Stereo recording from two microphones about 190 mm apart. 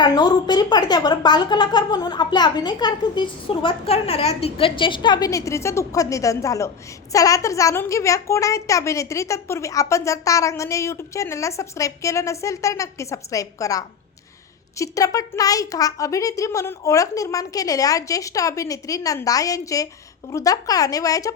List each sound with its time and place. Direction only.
0.0 s a woman's voice: 20° left (ahead or behind)